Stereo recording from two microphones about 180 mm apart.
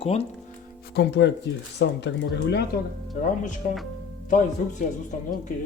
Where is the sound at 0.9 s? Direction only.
70° left (ahead or behind).